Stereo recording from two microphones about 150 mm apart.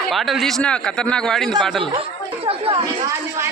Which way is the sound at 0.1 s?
Centre (ahead or behind).